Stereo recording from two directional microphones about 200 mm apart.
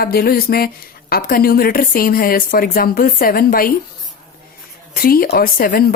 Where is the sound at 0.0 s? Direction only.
50° left (ahead or behind).